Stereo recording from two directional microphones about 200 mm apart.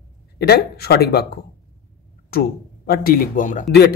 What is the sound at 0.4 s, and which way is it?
Speech, 55° left (ahead or behind).